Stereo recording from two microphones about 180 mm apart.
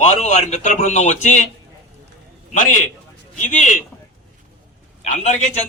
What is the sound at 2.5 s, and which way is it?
A man's voice, 45° left (ahead or behind).